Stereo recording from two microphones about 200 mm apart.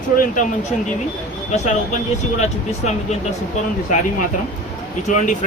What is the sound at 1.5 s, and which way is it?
Speech, 35° left (ahead or behind).